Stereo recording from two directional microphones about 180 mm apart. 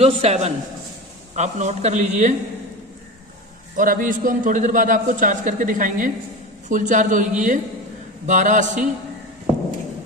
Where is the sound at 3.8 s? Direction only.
50° right (ahead or behind).